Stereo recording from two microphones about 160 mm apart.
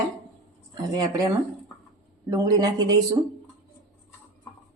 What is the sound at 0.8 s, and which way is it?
Speech, 25° right (ahead or behind).